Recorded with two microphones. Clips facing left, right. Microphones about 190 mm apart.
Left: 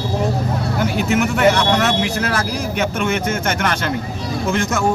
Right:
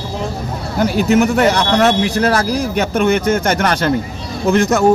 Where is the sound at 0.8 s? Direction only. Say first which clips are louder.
Right 6 dB; 35° right (ahead or behind).